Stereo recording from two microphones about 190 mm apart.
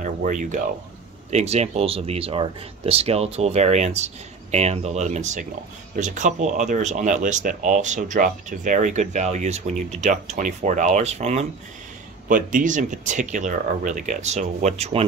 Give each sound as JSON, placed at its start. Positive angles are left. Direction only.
{"t": 0.0, "sound": "speech", "side_deg": -40}